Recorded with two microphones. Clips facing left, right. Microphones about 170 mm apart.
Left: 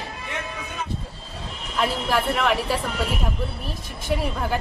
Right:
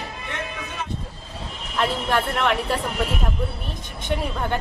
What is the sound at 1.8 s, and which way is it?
Speech, centre (ahead or behind).